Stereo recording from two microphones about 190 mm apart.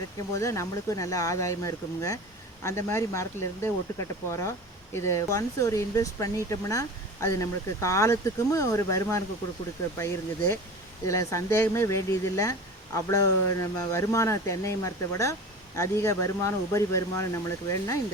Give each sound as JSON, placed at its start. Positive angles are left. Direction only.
{"t": 0.3, "sound": "speech", "side_deg": 15}